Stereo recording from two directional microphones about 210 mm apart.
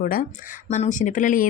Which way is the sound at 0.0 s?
40° left (ahead or behind).